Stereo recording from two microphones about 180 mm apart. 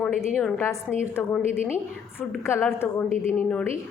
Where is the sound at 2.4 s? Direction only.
15° left (ahead or behind).